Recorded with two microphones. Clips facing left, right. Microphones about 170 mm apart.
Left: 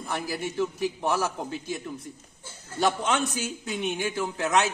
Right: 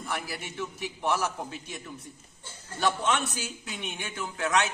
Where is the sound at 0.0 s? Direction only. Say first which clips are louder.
Left 4 dB; 35° left (ahead or behind).